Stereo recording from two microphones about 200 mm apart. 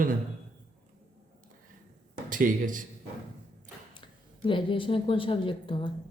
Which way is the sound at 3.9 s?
25° left (ahead or behind).